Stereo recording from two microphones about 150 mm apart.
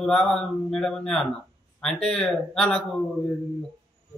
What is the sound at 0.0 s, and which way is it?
A man's voice, 5° left (ahead or behind).